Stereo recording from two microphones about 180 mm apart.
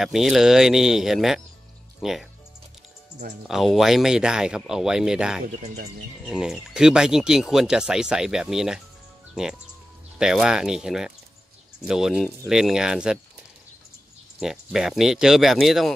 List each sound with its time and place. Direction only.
0.0 s speech: centre (ahead or behind)
3.4 s speech: centre (ahead or behind)
5.4 s speech: 55° right (ahead or behind)
6.2 s speech: 5° right (ahead or behind)
14.4 s speech: centre (ahead or behind)